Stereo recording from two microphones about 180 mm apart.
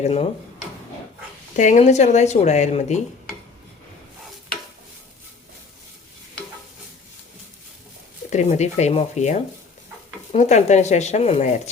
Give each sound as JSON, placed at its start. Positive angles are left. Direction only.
{"t": 0.0, "sound": "speech", "side_deg": 35}
{"t": 1.5, "sound": "speech", "side_deg": 45}
{"t": 8.3, "sound": "speech", "side_deg": 40}